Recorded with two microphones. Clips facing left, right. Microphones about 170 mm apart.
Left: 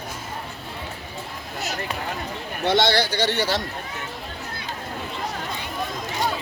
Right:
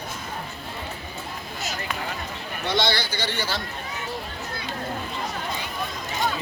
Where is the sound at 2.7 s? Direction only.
75° left (ahead or behind).